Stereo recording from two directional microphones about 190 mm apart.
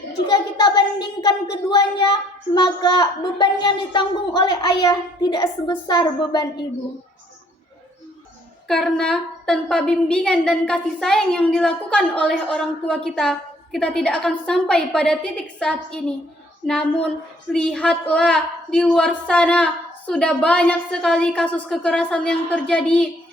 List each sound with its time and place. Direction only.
0.3 s a woman's voice: 25° left (ahead or behind)
8.6 s a woman's voice: centre (ahead or behind)